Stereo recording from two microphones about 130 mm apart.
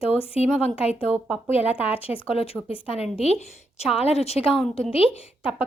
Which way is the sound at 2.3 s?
50° left (ahead or behind).